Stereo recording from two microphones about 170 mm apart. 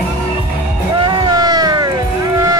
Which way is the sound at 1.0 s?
25° right (ahead or behind).